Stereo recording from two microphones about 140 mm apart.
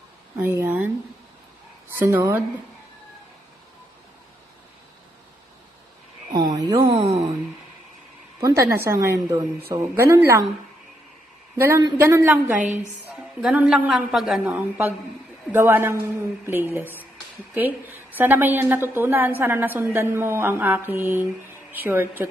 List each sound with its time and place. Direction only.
0.4 s a sound: 15° right (ahead or behind)
2.0 s a woman's voice: 15° right (ahead or behind)
6.3 s a sound: 25° right (ahead or behind)
6.8 s a woman's voice: 25° right (ahead or behind)
8.4 s a woman's voice: 20° right (ahead or behind)
11.5 s a woman's voice: 20° right (ahead or behind)
12.6 s a woman's voice: 60° right (ahead or behind)
13.1 s a woman's voice: 5° right (ahead or behind)